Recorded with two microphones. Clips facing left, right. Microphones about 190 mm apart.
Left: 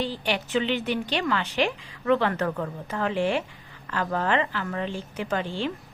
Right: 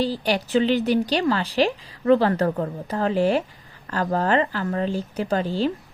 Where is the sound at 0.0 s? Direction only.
40° right (ahead or behind).